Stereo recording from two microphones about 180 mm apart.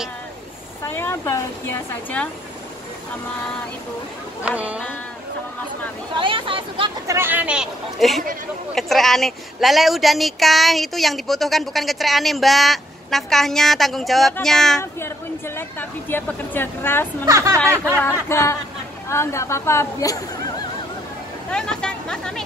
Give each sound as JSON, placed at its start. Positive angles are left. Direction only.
{"t": 0.8, "sound": "a woman's voice", "side_deg": 15}
{"t": 4.5, "sound": "speech", "side_deg": -5}
{"t": 6.1, "sound": "speech", "side_deg": -30}
{"t": 7.1, "sound": "a woman's voice", "side_deg": -10}
{"t": 14.8, "sound": "a woman's voice", "side_deg": 15}
{"t": 17.2, "sound": "speech", "side_deg": -15}
{"t": 18.0, "sound": "a woman's voice", "side_deg": 15}
{"t": 21.5, "sound": "speech", "side_deg": 5}